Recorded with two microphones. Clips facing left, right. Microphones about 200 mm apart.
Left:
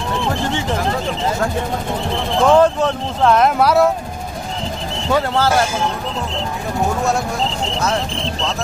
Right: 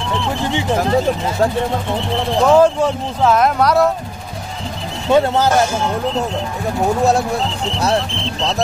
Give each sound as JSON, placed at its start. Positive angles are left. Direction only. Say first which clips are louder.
{"t": 2.5, "sound": "speech", "louder": "right 2 dB", "side_deg": -10}
{"t": 5.1, "sound": "speech", "louder": "right 4 dB", "side_deg": -20}